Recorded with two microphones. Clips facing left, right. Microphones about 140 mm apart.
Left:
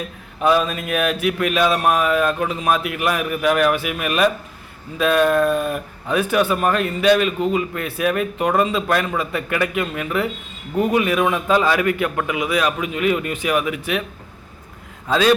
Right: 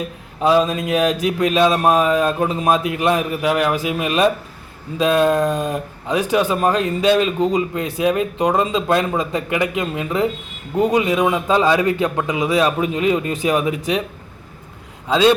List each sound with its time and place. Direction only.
0.3 s a man's voice: 25° right (ahead or behind)
15.0 s a man's voice: 20° right (ahead or behind)